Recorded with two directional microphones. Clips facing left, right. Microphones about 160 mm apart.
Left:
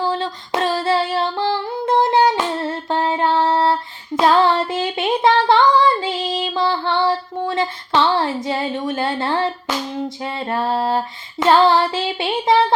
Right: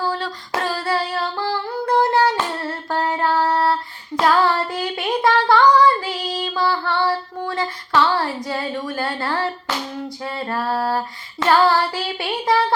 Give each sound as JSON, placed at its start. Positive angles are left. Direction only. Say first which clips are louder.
{"t": 0.0, "sound": "female singing", "louder": "left 3 dB", "side_deg": 20}